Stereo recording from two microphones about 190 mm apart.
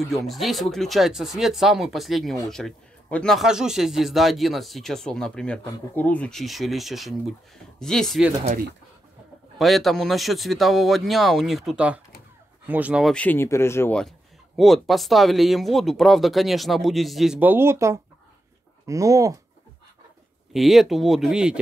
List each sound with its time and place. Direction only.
0.0 s a man's voice: centre (ahead or behind)
9.6 s a man's voice: centre (ahead or behind); by 19.3 s 15° right (ahead or behind)
20.5 s a man's voice: centre (ahead or behind)